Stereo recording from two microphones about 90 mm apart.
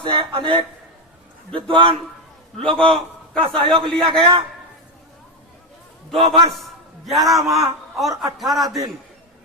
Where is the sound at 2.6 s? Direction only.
5° left (ahead or behind).